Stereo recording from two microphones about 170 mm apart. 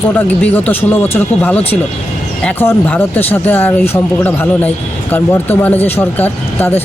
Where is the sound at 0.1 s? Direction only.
10° left (ahead or behind).